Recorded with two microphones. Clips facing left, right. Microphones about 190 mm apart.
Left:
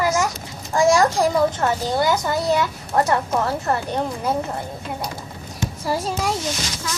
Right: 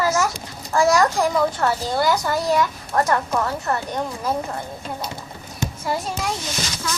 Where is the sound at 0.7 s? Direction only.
25° left (ahead or behind).